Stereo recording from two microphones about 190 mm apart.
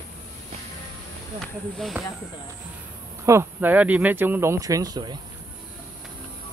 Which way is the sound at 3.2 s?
10° right (ahead or behind).